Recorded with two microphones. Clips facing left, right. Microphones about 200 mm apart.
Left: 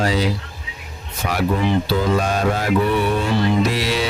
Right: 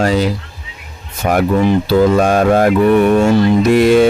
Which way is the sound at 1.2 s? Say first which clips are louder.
Right 7 dB; 50° right (ahead or behind).